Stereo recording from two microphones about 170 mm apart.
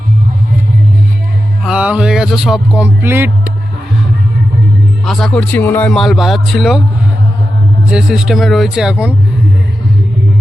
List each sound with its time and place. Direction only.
1.6 s speech: 5° right (ahead or behind)
5.0 s a man's voice: 5° left (ahead or behind)
7.9 s a man's voice: 5° right (ahead or behind)